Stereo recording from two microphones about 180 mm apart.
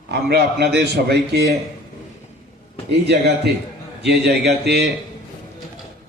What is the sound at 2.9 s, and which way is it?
A man's voice, 65° right (ahead or behind).